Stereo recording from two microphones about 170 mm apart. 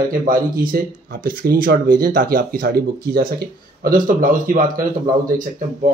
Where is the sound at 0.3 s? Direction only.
55° right (ahead or behind).